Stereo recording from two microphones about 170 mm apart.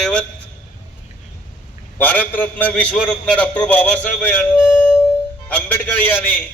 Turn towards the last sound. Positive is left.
turn(degrees=10)  # may be behind; listen again after turning